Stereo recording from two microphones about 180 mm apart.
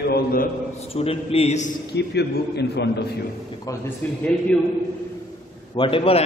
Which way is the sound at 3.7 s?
20° left (ahead or behind).